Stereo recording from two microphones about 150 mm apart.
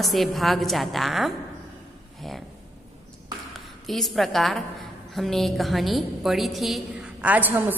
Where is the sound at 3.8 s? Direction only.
Centre (ahead or behind).